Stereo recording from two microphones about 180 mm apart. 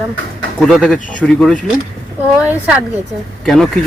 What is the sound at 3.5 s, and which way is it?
Speech, centre (ahead or behind).